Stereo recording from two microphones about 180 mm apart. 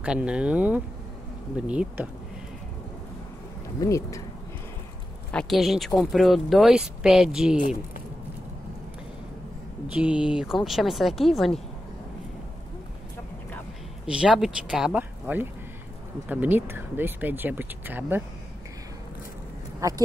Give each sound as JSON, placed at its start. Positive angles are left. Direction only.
{"t": 0.0, "sound": "speech", "side_deg": -5}
{"t": 3.8, "sound": "speech", "side_deg": 15}
{"t": 5.3, "sound": "speech", "side_deg": 0}
{"t": 9.9, "sound": "speech", "side_deg": -5}
{"t": 14.0, "sound": "speech", "side_deg": -5}
{"t": 19.8, "sound": "speech", "side_deg": -20}